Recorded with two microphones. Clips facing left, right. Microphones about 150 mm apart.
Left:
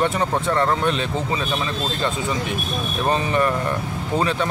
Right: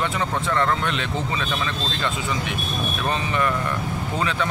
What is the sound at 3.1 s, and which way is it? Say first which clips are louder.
Speech: left 4 dB; 35° left (ahead or behind).